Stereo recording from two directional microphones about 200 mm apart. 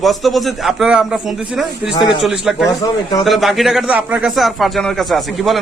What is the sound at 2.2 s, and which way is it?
A man's voice, centre (ahead or behind).